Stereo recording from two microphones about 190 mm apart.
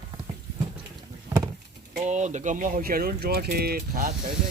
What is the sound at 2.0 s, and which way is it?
Speech, 40° right (ahead or behind).